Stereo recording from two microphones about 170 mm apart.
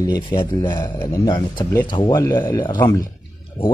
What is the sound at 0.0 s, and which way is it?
Speech, 20° left (ahead or behind).